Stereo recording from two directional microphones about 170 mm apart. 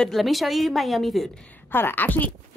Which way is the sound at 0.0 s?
Centre (ahead or behind).